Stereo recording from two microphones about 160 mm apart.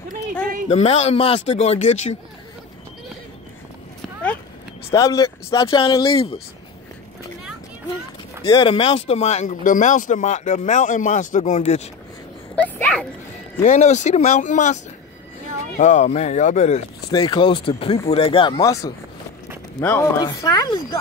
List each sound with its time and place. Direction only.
0.7 s speech: 45° left (ahead or behind)
4.9 s speech: 20° left (ahead or behind); by 6.4 s 35° left (ahead or behind)
8.5 s speech: 25° left (ahead or behind); by 11.9 s 45° left (ahead or behind)
12.7 s a child's voice: 10° left (ahead or behind)
13.6 s speech: 45° left (ahead or behind)
15.8 s speech: 45° left (ahead or behind)
17.1 s a child's voice: 30° left (ahead or behind); by 20.1 s 15° left (ahead or behind)
20.2 s speech: 25° left (ahead or behind)